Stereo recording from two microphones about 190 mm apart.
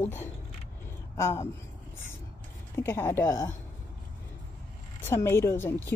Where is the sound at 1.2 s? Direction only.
15° left (ahead or behind).